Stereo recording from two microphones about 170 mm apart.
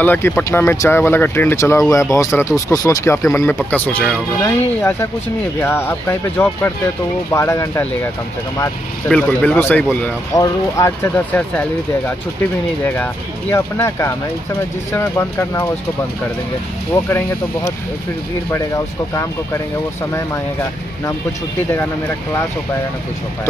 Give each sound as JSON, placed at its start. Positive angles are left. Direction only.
{"t": 0.0, "sound": "speech", "side_deg": 10}
{"t": 9.1, "sound": "speech", "side_deg": 10}
{"t": 12.8, "sound": "speech", "side_deg": 10}